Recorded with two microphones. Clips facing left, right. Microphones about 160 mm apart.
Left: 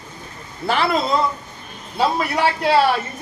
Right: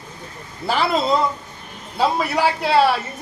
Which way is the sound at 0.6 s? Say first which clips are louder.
Even; centre (ahead or behind).